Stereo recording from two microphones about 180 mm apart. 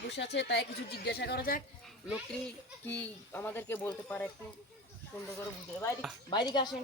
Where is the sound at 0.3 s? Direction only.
70° left (ahead or behind); by 1.6 s 55° left (ahead or behind).